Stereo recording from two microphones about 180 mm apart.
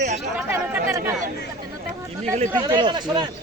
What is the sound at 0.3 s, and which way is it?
Chatter, 10° right (ahead or behind).